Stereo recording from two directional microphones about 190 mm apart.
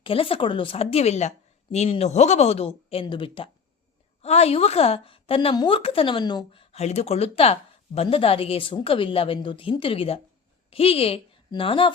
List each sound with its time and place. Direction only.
0.0 s a woman's voice: 30° left (ahead or behind)